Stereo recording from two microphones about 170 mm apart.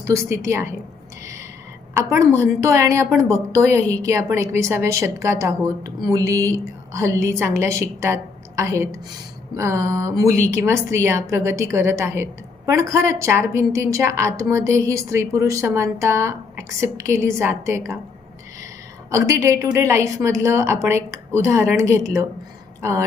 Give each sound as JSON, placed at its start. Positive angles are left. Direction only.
{"t": 0.0, "sound": "a woman's voice", "side_deg": -15}
{"t": 1.2, "sound": "a sound", "side_deg": -20}
{"t": 1.9, "sound": "a woman's voice", "side_deg": -15}
{"t": 19.1, "sound": "a woman's voice", "side_deg": -20}